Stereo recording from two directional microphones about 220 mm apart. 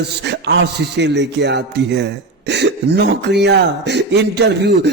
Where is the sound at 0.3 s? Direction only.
50° right (ahead or behind).